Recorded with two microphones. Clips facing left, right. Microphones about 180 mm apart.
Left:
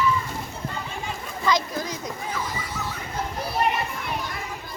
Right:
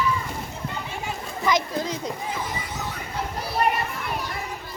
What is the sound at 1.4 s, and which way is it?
Children playing, 20° right (ahead or behind).